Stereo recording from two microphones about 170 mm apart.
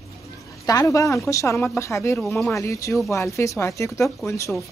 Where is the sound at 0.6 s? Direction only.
20° left (ahead or behind).